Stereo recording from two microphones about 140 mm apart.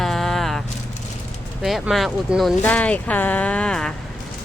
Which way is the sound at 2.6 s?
10° left (ahead or behind).